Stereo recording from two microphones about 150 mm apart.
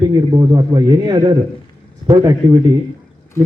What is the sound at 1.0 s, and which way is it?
Speech, 30° right (ahead or behind).